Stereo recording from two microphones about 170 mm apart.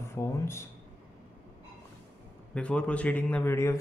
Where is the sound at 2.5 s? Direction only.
5° left (ahead or behind).